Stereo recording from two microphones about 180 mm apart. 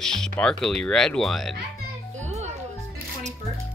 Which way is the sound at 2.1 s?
40° right (ahead or behind).